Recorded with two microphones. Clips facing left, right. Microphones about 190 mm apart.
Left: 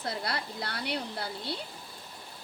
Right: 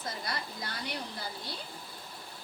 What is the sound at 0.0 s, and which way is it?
Speech, 65° left (ahead or behind).